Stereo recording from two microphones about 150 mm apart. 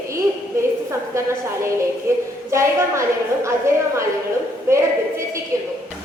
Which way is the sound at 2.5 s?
20° right (ahead or behind).